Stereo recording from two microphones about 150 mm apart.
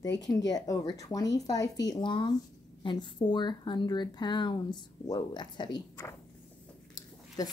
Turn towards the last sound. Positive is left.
turn(degrees=25)  # may be behind; listen again after turning